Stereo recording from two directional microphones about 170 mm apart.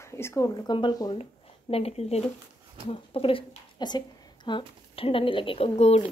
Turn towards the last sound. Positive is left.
turn(degrees=40)  # may be behind; listen again after turning